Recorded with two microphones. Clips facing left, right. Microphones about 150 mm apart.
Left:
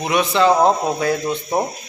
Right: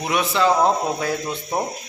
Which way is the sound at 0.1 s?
5° right (ahead or behind).